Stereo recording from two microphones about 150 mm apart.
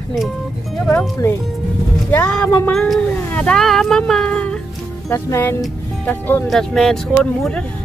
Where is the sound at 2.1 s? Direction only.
10° left (ahead or behind).